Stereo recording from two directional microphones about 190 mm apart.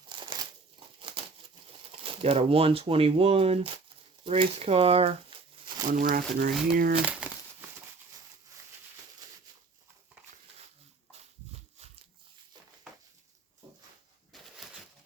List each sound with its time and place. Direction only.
0.1 s crumpling: 25° right (ahead or behind)
2.2 s speech: 30° right (ahead or behind)
5.9 s speech: 50° right (ahead or behind)
7.2 s crumpling: 5° right (ahead or behind)
11.8 s a sound: 35° right (ahead or behind)